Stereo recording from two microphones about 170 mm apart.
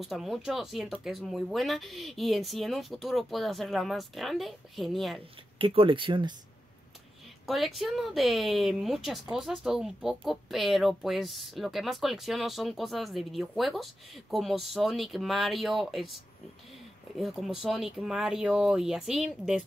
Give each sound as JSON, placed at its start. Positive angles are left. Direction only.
{"t": 0.0, "sound": "speech", "side_deg": 0}
{"t": 5.6, "sound": "speech", "side_deg": -30}
{"t": 7.4, "sound": "speech", "side_deg": 0}
{"t": 17.2, "sound": "speech", "side_deg": 0}